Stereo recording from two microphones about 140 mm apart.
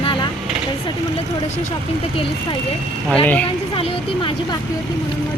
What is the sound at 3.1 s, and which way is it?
Speech, 10° left (ahead or behind).